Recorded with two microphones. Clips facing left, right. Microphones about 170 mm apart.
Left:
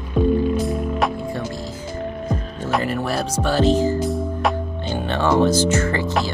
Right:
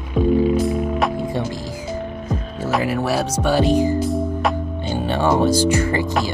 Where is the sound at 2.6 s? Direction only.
5° right (ahead or behind).